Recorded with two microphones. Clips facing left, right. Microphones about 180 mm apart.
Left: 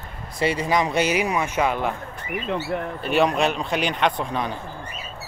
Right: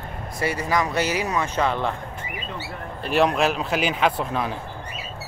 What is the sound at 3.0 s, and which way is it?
Speech, centre (ahead or behind).